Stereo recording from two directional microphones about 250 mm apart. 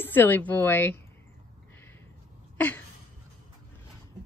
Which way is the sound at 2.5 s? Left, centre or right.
Centre.